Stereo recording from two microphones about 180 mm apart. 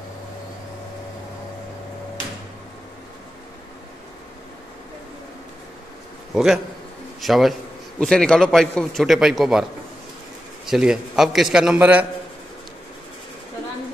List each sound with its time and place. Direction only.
6.3 s a man's voice: centre (ahead or behind)
10.7 s a man's voice: 5° right (ahead or behind)